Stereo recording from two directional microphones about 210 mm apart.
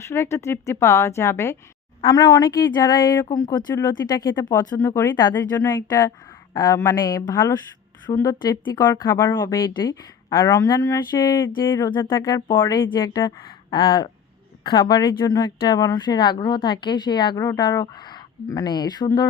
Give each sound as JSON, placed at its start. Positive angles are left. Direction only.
{"t": 0.0, "sound": "speech", "side_deg": 10}
{"t": 11.9, "sound": "a woman's voice", "side_deg": 20}